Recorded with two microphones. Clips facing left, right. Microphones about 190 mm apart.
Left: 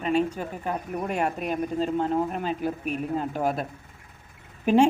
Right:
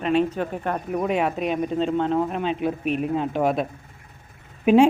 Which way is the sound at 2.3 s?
75° right (ahead or behind).